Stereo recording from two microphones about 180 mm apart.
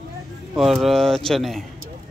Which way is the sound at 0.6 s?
Centre (ahead or behind).